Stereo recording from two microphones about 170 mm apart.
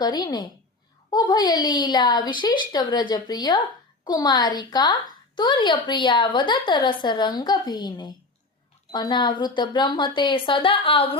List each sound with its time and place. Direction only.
0.0 s a woman's voice: 25° left (ahead or behind)